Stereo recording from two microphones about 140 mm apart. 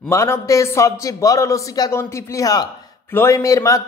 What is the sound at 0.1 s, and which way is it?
A man's voice, 20° left (ahead or behind).